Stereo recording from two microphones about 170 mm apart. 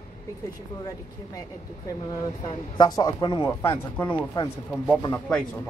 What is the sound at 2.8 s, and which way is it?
Speech, 25° left (ahead or behind).